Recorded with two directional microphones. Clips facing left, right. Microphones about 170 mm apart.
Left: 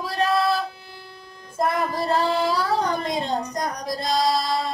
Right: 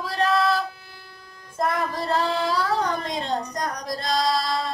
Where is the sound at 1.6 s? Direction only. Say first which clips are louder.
Left 2 dB; 10° left (ahead or behind).